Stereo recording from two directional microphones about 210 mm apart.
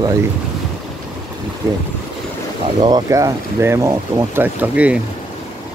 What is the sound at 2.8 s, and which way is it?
Speech, 15° right (ahead or behind).